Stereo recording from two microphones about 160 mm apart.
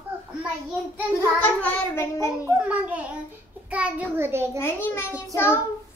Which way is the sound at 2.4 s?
10° right (ahead or behind).